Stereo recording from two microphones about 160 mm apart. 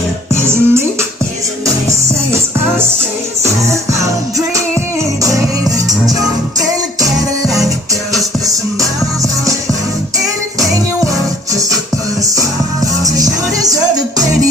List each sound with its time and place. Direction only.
0.4 s music: 15° right (ahead or behind)
3.9 s music: 20° right (ahead or behind)
5.7 s music: 20° right (ahead or behind)
12.2 s music: 20° right (ahead or behind)